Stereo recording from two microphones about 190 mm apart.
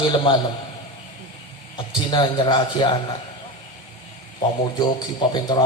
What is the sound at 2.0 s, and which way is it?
Speech, 25° left (ahead or behind).